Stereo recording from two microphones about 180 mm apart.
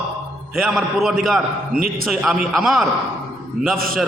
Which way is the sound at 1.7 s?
55° right (ahead or behind).